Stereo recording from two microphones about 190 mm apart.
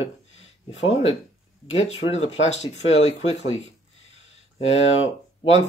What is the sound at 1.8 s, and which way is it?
Speech, 35° left (ahead or behind).